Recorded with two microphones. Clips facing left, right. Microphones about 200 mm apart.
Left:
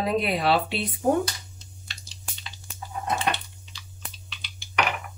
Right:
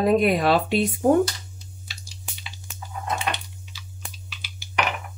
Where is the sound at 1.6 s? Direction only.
5° right (ahead or behind).